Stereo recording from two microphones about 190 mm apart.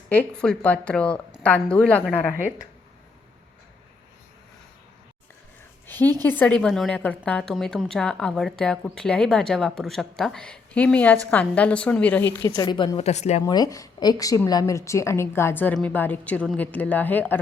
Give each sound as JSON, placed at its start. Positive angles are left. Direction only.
{"t": 0.1, "sound": "a woman's voice", "side_deg": 5}
{"t": 5.9, "sound": "a woman's voice", "side_deg": 10}
{"t": 12.5, "sound": "a woman's voice", "side_deg": 25}
{"t": 13.0, "sound": "speech", "side_deg": 35}
{"t": 13.4, "sound": "a woman's voice", "side_deg": 20}